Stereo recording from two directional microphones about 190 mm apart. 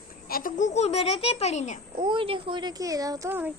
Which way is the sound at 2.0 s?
25° right (ahead or behind).